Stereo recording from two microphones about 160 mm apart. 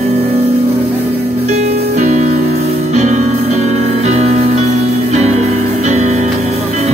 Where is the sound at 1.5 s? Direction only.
45° right (ahead or behind).